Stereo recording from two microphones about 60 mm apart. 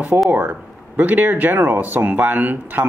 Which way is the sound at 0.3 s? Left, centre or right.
Right.